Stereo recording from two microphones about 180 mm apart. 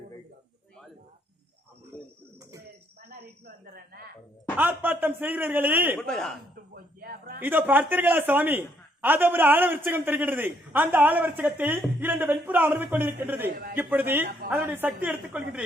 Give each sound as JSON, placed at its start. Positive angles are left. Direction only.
{"t": 4.5, "sound": "a man's voice", "side_deg": -10}
{"t": 6.0, "sound": "speech", "side_deg": 5}
{"t": 6.7, "sound": "a sound", "side_deg": -55}
{"t": 7.4, "sound": "a man's voice", "side_deg": -10}